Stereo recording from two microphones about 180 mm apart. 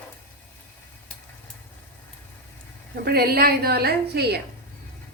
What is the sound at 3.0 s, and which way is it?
A woman's voice, 60° right (ahead or behind).